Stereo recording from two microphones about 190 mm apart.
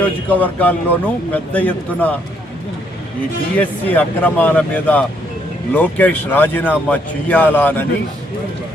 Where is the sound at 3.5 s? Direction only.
10° left (ahead or behind).